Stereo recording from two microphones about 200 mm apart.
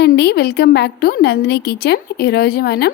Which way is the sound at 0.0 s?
55° left (ahead or behind).